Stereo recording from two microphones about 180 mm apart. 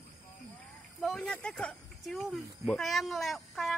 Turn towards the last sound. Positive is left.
turn(degrees=0)  # may be behind; listen again after turning